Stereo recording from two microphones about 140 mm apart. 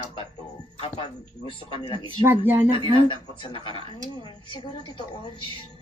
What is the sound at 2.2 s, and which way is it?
Speech, 15° right (ahead or behind).